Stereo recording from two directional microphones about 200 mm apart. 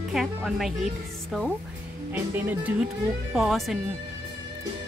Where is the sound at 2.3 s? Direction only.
10° right (ahead or behind).